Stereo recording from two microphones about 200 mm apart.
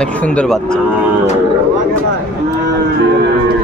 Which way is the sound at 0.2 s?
5° left (ahead or behind).